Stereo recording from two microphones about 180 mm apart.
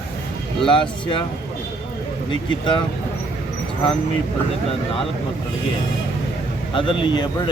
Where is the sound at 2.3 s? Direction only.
25° left (ahead or behind).